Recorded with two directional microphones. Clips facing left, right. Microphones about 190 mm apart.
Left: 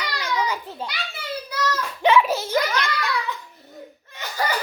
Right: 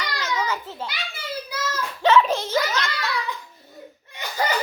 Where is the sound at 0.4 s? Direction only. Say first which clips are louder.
Left 1 dB; 15° left (ahead or behind).